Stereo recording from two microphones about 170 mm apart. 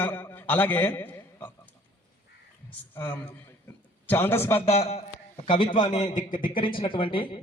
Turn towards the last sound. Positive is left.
turn(degrees=30)  # may be behind; listen again after turning